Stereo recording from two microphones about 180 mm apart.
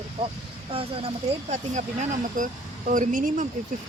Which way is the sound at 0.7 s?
30° right (ahead or behind).